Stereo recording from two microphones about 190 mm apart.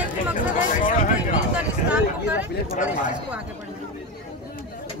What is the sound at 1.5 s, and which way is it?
Vehicle, 5° right (ahead or behind).